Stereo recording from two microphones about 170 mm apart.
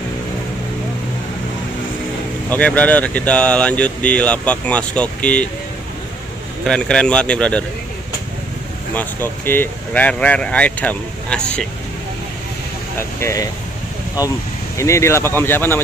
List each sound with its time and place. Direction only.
2.5 s speech: 10° left (ahead or behind)
6.6 s a man's voice: 5° left (ahead or behind)
8.9 s speech: 10° left (ahead or behind)
13.2 s speech: 20° left (ahead or behind)
14.8 s speech: 15° left (ahead or behind)